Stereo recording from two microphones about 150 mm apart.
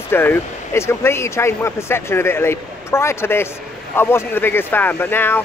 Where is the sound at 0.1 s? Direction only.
15° left (ahead or behind).